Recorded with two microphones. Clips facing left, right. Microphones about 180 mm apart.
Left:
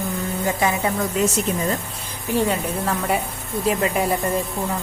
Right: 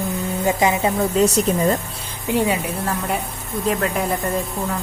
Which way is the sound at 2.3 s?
10° right (ahead or behind).